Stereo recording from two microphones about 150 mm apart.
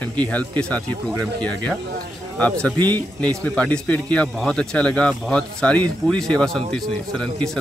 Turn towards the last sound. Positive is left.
turn(degrees=5)  # may be behind; listen again after turning